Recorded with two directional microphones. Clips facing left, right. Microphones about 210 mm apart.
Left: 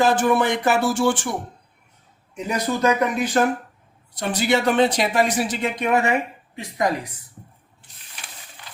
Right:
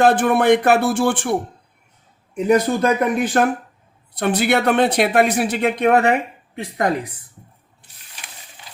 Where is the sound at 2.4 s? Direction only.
55° right (ahead or behind).